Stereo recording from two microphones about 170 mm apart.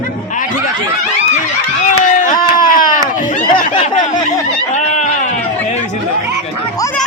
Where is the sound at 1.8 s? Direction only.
45° left (ahead or behind).